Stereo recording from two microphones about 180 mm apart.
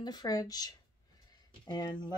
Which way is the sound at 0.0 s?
20° left (ahead or behind).